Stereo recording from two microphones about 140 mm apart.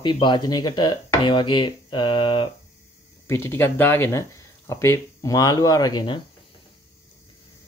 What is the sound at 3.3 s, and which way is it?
Speech, 20° left (ahead or behind).